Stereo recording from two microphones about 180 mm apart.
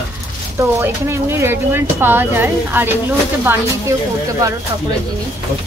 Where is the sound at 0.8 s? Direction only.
15° right (ahead or behind).